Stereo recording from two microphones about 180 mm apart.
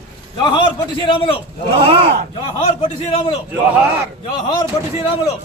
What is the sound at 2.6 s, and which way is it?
Speech, 35° left (ahead or behind).